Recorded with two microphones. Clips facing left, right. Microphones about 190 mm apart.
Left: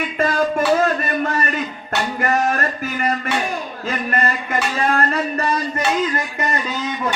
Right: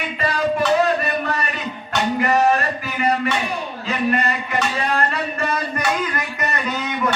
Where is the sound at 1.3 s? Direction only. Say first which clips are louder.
Left 3 dB; 45° left (ahead or behind).